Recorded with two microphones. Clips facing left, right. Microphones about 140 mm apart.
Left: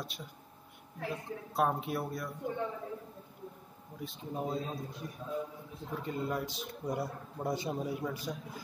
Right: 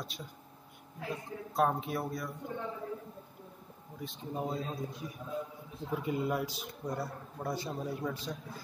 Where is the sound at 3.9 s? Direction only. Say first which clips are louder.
Even; centre (ahead or behind).